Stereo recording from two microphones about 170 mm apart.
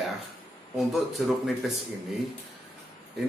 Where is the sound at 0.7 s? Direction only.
Centre (ahead or behind).